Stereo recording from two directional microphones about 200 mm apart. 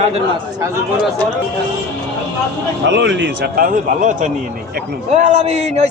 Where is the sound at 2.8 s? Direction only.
65° right (ahead or behind).